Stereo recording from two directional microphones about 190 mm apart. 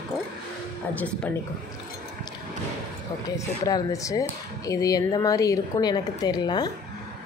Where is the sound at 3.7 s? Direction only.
20° left (ahead or behind).